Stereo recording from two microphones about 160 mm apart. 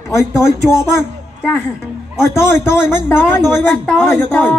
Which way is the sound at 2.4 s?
15° left (ahead or behind).